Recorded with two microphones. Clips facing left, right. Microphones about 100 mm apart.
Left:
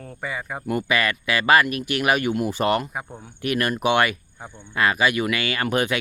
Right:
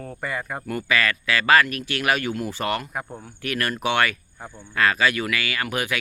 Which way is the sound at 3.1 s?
5° right (ahead or behind).